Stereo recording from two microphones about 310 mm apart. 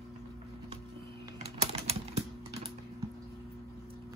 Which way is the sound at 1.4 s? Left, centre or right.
Right.